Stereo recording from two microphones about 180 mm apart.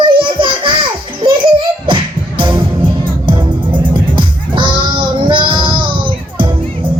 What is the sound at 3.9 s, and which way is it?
Music, 25° right (ahead or behind).